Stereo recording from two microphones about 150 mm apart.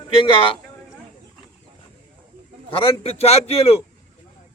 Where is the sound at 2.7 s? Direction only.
40° left (ahead or behind).